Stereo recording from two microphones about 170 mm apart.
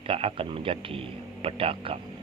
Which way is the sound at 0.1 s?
35° right (ahead or behind).